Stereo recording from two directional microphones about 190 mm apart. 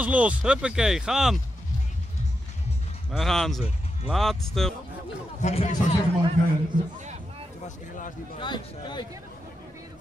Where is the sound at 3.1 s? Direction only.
Centre (ahead or behind).